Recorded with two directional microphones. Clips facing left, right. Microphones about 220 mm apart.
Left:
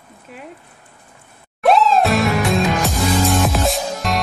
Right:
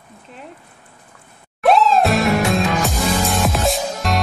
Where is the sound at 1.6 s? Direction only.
Centre (ahead or behind).